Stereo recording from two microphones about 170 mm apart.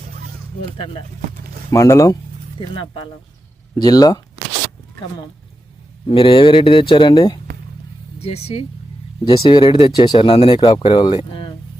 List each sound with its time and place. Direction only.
1.7 s speech: 20° left (ahead or behind)
2.6 s speech: 30° left (ahead or behind)
6.1 s speech: 30° left (ahead or behind)
8.2 s speech: 35° left (ahead or behind)